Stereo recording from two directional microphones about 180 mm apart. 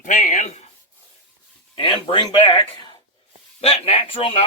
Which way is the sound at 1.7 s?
25° left (ahead or behind).